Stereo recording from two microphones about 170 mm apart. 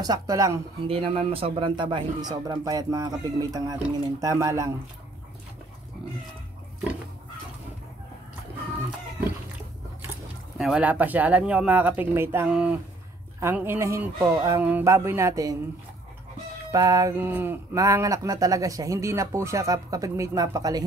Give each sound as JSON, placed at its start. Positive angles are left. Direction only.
{"t": 0.0, "sound": "speech", "side_deg": -20}
{"t": 0.8, "sound": "speech", "side_deg": -35}
{"t": 10.6, "sound": "speech", "side_deg": -5}
{"t": 16.7, "sound": "speech", "side_deg": -20}